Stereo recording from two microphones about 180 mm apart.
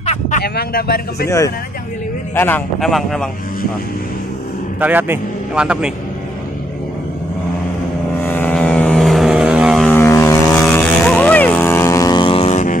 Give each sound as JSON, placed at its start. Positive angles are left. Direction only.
{"t": 0.0, "sound": "vehicle", "side_deg": 40}
{"t": 0.4, "sound": "speech", "side_deg": 60}
{"t": 2.3, "sound": "a man's voice", "side_deg": 10}
{"t": 4.7, "sound": "a man's voice", "side_deg": -10}
{"t": 8.2, "sound": "vehicle", "side_deg": 10}
{"t": 9.8, "sound": "vehicle", "side_deg": 10}